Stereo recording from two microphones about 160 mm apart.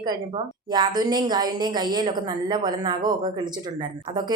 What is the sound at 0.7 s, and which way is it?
Speech, 25° right (ahead or behind).